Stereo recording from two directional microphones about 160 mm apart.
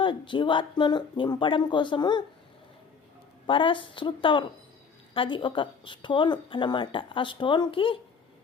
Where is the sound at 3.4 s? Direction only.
30° left (ahead or behind).